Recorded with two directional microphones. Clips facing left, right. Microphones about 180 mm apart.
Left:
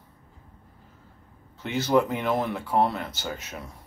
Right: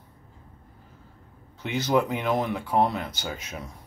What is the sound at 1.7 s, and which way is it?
Speech, 5° left (ahead or behind).